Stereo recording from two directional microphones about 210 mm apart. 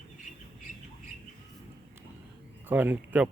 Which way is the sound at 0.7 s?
40° left (ahead or behind).